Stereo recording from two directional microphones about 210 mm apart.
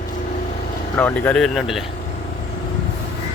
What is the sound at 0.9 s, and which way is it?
Speech, 10° left (ahead or behind).